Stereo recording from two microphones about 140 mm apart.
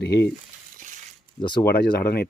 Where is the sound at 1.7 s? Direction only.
90° left.